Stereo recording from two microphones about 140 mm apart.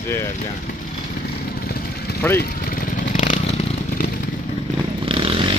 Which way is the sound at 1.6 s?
90° left.